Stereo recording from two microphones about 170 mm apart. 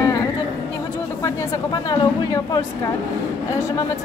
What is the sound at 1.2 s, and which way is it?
Speech, 20° left (ahead or behind).